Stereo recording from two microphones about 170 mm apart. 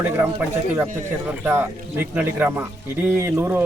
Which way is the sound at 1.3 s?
10° right (ahead or behind).